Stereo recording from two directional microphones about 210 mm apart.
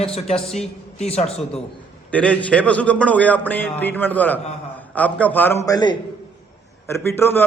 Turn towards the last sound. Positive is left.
turn(degrees=10)  # may be behind; listen again after turning